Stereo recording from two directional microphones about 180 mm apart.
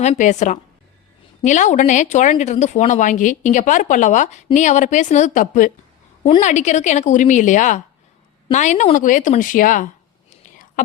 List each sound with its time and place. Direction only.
0.0 s a woman's voice: 40° left (ahead or behind)